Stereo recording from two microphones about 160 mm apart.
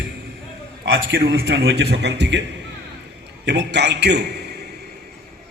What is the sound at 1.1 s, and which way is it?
A man's voice, 90° right.